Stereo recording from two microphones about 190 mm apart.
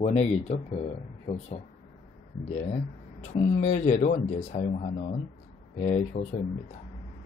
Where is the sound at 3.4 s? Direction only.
35° left (ahead or behind).